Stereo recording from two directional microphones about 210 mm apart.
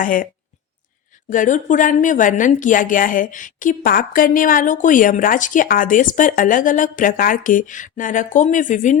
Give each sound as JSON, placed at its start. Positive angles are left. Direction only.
{"t": 0.0, "sound": "a woman's voice", "side_deg": 40}
{"t": 1.3, "sound": "a woman's voice", "side_deg": 40}